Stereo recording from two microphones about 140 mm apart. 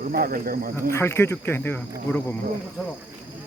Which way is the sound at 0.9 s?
20° left (ahead or behind).